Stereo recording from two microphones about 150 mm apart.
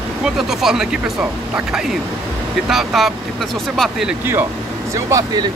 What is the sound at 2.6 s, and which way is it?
Speech, centre (ahead or behind).